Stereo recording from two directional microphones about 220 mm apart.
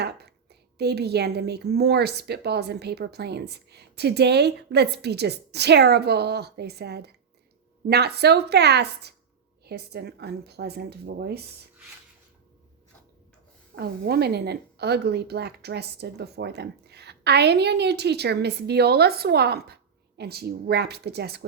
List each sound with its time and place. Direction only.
0.8 s a woman's voice: 50° right (ahead or behind)
13.7 s a woman's voice: 45° right (ahead or behind)